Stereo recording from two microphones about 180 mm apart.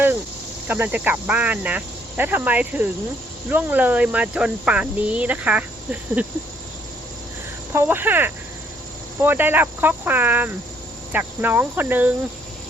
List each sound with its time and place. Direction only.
0.7 s speech: 10° right (ahead or behind)
7.7 s speech: 15° right (ahead or behind)